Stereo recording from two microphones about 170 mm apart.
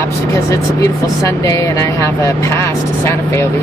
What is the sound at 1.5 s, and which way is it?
Speech, 20° left (ahead or behind).